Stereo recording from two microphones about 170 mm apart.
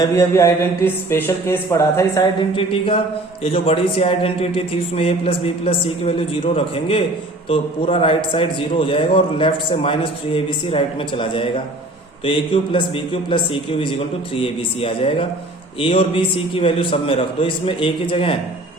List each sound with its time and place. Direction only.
0.0 s speech: 15° left (ahead or behind)
2.6 s a man's voice: 30° left (ahead or behind)